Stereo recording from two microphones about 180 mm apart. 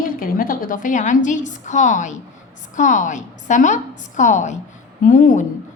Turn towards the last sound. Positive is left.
turn(degrees=45)  # may be behind; listen again after turning